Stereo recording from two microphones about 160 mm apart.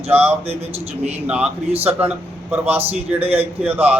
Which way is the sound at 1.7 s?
40° right (ahead or behind).